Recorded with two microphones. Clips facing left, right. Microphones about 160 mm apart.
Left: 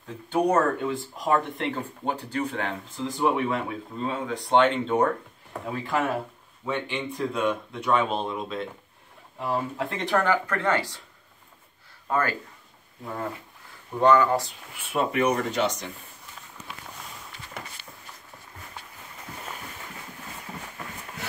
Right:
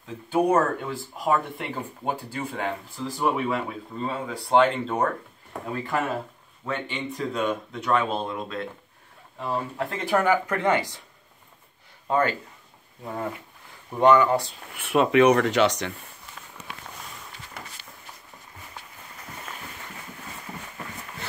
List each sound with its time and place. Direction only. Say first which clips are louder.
0.3 s speech: right 1 dB; 5° right (ahead or behind)
12.1 s speech: right 3 dB; 20° right (ahead or behind)
13.9 s speech: right 1 dB; 20° right (ahead or behind)
14.8 s speech: right 6 dB; 85° right